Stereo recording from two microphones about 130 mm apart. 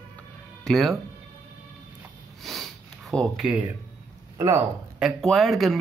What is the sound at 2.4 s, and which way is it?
Snort, centre (ahead or behind).